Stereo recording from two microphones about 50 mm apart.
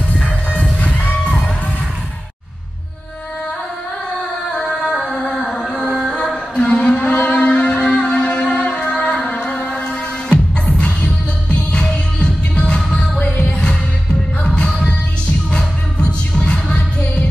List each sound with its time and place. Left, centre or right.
0.5 s music: left
4.6 s music: centre
14.4 s music: centre